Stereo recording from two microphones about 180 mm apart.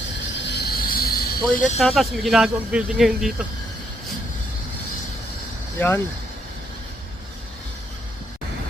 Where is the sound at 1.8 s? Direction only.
Centre (ahead or behind).